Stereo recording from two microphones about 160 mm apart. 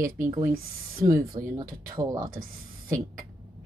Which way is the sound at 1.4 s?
25° right (ahead or behind).